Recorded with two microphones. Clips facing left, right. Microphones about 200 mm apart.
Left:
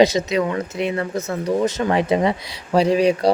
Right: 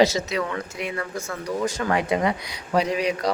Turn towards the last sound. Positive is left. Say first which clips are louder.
# left 7 dB
turn(degrees=30)  # may be behind; listen again after turning